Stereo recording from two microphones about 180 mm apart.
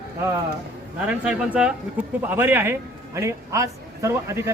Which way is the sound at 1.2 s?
5° right (ahead or behind).